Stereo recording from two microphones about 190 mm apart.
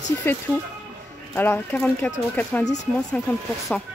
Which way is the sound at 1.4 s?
10° left (ahead or behind).